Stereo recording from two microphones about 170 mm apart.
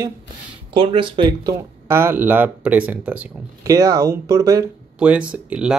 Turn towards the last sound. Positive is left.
turn(degrees=-5)  # may be behind; listen again after turning